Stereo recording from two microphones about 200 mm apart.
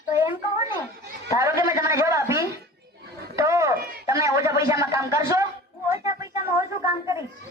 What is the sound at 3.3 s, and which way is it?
Chatter, 15° right (ahead or behind).